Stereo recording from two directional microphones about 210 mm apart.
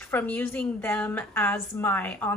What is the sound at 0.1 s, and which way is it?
A woman's voice, 10° left (ahead or behind).